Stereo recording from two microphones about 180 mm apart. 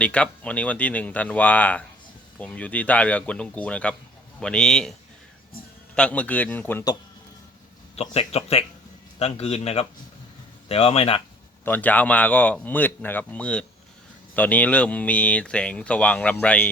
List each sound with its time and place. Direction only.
0.0 s speech: 5° left (ahead or behind)
7.9 s speech: 35° left (ahead or behind)
11.6 s speech: 10° left (ahead or behind)